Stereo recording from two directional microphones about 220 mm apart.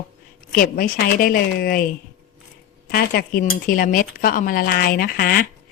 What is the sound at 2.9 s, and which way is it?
A woman's voice, 45° left (ahead or behind).